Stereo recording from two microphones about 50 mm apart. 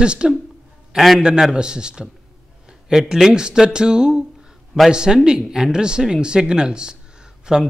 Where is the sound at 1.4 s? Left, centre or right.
Centre.